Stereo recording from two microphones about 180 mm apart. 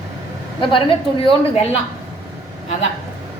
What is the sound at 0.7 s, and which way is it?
Speech, 30° left (ahead or behind).